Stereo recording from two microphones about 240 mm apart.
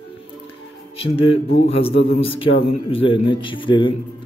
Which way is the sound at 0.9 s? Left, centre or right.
Left.